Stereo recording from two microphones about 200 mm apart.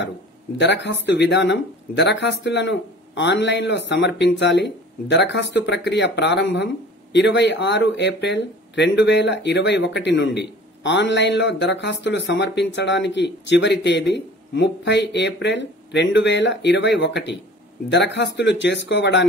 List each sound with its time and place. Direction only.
0.6 s speech: 60° left (ahead or behind)